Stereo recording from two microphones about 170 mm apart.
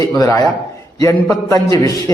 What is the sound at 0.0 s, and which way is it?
A man's voice, 20° left (ahead or behind).